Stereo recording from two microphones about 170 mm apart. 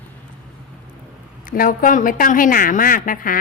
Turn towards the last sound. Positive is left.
turn(degrees=55)  # may be behind; listen again after turning